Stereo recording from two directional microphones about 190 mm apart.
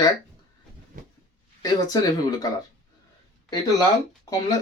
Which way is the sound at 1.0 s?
45° right (ahead or behind).